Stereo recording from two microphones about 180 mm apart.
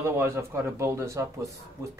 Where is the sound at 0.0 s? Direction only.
15° right (ahead or behind).